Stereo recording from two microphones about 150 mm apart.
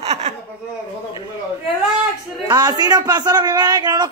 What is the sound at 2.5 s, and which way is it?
A man's voice, 25° right (ahead or behind).